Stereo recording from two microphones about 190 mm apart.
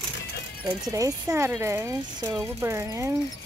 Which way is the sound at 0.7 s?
15° right (ahead or behind).